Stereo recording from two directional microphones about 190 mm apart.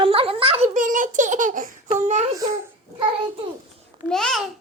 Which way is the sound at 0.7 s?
45° right (ahead or behind).